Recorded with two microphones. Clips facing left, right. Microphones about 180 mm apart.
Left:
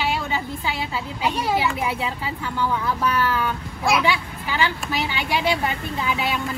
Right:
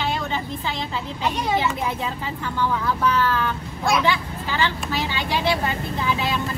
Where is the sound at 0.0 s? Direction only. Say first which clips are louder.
Left 1 dB; 10° left (ahead or behind).